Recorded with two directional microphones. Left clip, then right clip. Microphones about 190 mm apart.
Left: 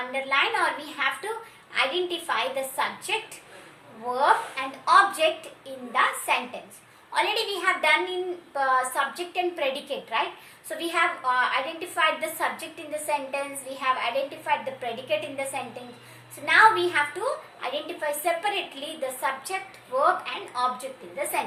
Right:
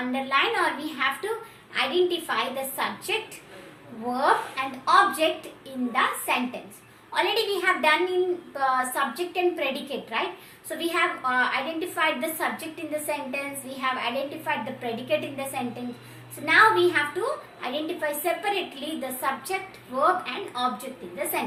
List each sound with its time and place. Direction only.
0.1 s a woman's voice: 20° left (ahead or behind)